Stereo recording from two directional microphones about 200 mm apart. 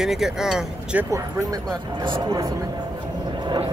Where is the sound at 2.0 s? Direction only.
20° right (ahead or behind).